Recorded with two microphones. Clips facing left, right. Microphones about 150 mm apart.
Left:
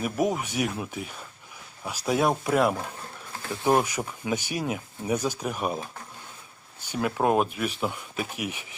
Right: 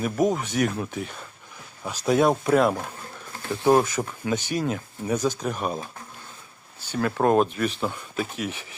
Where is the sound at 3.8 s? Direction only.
10° left (ahead or behind).